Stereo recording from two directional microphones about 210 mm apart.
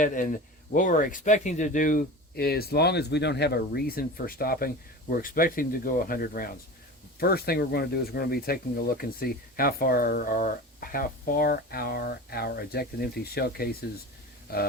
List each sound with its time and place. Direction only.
0.0 s speech: 40° left (ahead or behind)